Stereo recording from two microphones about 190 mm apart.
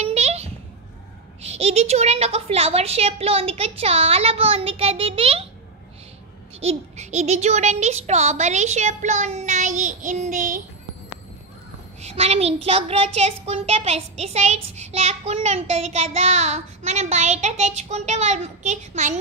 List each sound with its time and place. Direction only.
0.0 s a sound: 35° right (ahead or behind)
1.4 s a child's voice: 35° right (ahead or behind)
6.6 s a child's voice: 35° right (ahead or behind)
12.0 s a child's voice: 35° right (ahead or behind)